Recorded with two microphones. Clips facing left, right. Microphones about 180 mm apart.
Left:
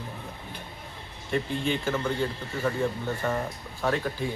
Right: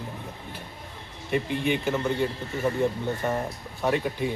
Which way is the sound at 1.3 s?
15° right (ahead or behind).